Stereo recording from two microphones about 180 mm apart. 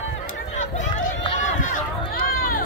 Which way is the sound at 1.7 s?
50° left (ahead or behind).